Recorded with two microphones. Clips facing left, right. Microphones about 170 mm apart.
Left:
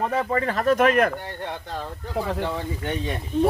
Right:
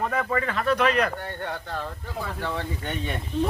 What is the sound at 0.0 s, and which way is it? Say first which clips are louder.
Speech: left 3 dB; 30° left (ahead or behind).